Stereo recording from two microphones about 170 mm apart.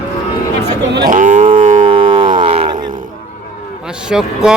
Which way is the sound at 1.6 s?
45° right (ahead or behind).